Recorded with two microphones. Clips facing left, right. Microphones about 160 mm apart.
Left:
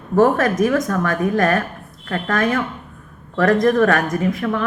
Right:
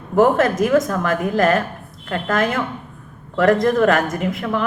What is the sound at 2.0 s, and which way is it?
Speech, 25° right (ahead or behind).